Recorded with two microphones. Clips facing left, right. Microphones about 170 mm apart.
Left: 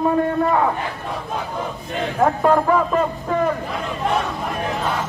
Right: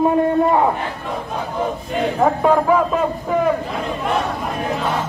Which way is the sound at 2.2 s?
5° right (ahead or behind).